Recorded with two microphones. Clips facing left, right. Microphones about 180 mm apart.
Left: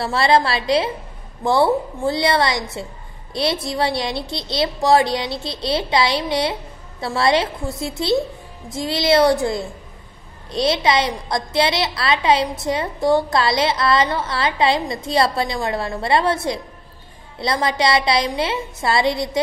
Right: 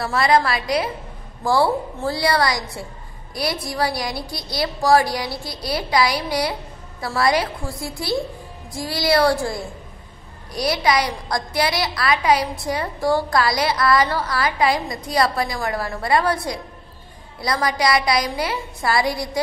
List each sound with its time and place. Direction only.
0.0 s a woman's voice: 30° left (ahead or behind)